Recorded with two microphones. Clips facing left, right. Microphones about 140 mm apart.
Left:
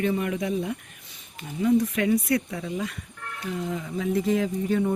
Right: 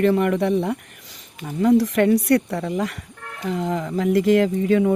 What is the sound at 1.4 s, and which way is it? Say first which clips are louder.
Speech: right 5 dB; 80° right.